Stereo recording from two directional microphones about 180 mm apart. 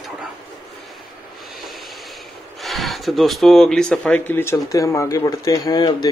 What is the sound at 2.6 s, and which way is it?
Speech, centre (ahead or behind).